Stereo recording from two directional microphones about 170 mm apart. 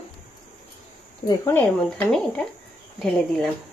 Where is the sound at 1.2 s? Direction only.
15° left (ahead or behind).